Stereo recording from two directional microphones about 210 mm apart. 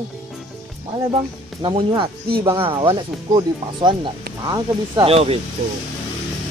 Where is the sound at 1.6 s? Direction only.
25° right (ahead or behind).